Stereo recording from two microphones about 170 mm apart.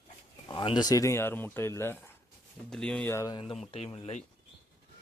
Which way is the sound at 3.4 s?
35° left (ahead or behind).